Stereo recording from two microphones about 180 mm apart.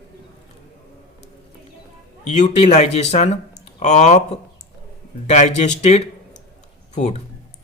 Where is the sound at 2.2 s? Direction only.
40° left (ahead or behind).